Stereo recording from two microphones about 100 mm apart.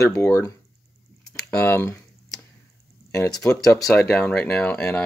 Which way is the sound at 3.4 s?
10° left (ahead or behind).